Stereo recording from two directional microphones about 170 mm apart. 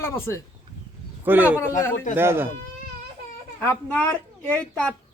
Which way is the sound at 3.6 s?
10° left (ahead or behind).